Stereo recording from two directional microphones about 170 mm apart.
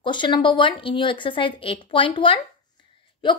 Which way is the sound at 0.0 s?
30° left (ahead or behind).